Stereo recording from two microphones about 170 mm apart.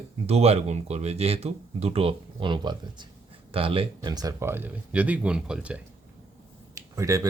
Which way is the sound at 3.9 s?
20° right (ahead or behind).